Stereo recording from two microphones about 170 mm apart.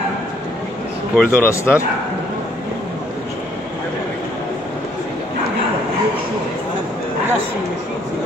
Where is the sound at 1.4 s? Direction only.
15° left (ahead or behind).